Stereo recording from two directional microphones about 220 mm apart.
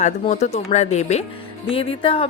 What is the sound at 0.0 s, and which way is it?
A woman's voice, 30° left (ahead or behind).